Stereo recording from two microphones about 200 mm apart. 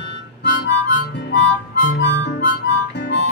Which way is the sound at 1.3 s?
60° left (ahead or behind).